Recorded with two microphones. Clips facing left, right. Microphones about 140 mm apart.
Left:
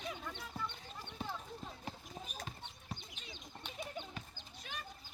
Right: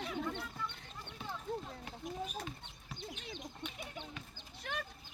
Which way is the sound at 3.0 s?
60° right (ahead or behind).